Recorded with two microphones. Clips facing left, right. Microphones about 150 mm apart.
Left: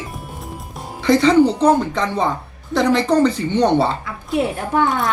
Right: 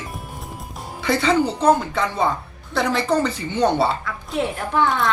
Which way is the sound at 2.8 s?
15° left (ahead or behind).